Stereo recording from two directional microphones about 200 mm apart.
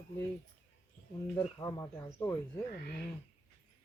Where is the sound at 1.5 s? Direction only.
15° left (ahead or behind).